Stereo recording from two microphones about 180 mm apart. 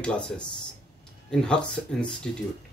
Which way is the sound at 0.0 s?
5° left (ahead or behind).